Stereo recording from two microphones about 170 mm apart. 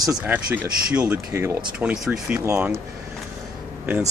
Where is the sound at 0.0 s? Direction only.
5° right (ahead or behind).